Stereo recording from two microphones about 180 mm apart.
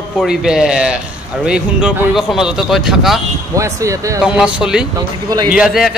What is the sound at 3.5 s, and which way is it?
Speech, 15° right (ahead or behind).